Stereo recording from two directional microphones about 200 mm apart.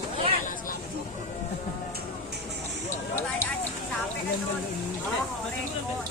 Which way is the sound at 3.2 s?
10° left (ahead or behind).